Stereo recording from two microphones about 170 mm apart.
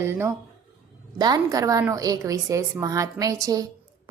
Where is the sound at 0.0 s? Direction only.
15° right (ahead or behind).